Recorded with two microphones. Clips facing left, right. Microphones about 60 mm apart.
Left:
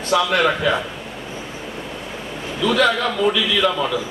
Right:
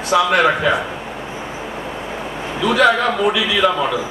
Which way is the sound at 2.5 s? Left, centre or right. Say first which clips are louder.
Right 3 dB; right.